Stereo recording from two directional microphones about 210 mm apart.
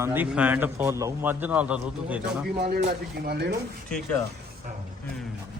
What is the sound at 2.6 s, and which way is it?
Speech, 50° right (ahead or behind).